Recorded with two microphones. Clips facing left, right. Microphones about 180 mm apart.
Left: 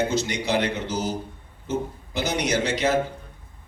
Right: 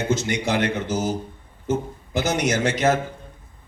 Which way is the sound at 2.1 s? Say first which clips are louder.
Right 3 dB; 50° right (ahead or behind).